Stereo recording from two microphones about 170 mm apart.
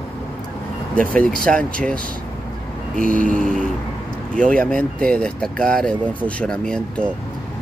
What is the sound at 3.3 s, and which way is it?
Speech, 5° left (ahead or behind).